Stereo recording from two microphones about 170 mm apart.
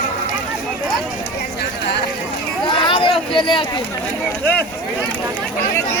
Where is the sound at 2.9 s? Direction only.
30° left (ahead or behind).